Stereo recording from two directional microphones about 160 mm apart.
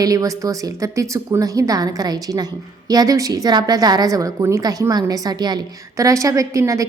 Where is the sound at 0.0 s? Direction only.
20° right (ahead or behind).